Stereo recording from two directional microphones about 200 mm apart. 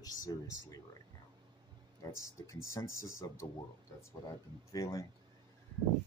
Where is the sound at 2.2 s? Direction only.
15° left (ahead or behind).